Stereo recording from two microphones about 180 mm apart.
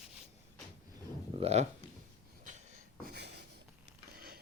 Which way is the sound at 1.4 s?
35° right (ahead or behind).